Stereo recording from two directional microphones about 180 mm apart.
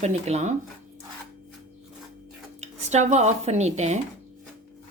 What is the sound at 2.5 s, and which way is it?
Speech, 40° right (ahead or behind).